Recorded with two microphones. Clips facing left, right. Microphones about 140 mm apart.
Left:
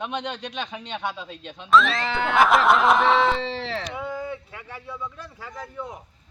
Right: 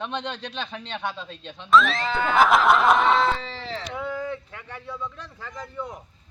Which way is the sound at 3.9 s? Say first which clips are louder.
Right 1 dB; 10° left (ahead or behind).